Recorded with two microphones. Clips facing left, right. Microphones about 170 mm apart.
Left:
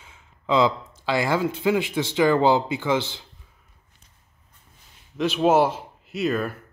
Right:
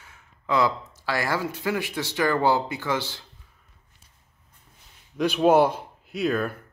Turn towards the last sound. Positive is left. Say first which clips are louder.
# even
turn(degrees=5)  # may be behind; listen again after turning